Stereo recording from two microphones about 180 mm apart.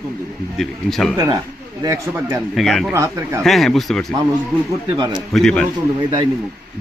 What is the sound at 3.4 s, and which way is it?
A man's voice, centre (ahead or behind).